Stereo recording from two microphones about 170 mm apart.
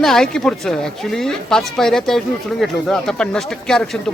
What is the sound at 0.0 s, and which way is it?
Speech, 5° left (ahead or behind).